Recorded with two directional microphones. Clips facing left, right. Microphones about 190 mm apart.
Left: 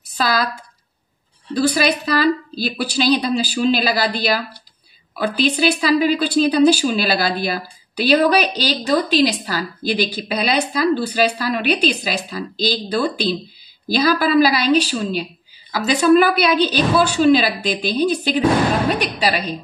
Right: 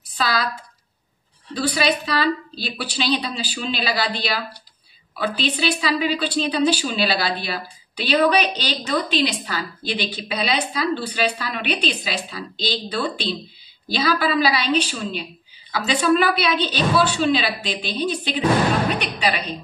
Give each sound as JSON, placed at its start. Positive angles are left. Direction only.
{"t": 0.2, "sound": "speech", "side_deg": 40}
{"t": 1.5, "sound": "a woman's voice", "side_deg": 45}